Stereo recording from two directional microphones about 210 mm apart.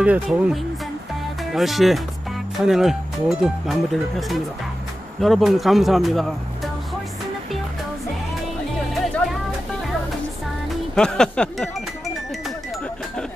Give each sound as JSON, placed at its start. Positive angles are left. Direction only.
{"t": 0.0, "sound": "speech", "side_deg": -5}
{"t": 11.0, "sound": "speech", "side_deg": 5}